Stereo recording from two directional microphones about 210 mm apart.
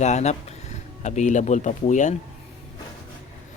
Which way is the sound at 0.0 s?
35° left (ahead or behind).